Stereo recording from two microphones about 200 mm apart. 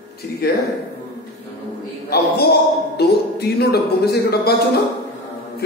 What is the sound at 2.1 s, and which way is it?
Speech, 55° left (ahead or behind).